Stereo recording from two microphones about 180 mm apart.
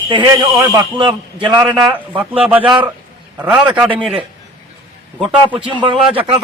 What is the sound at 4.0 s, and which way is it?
Speech, 30° right (ahead or behind).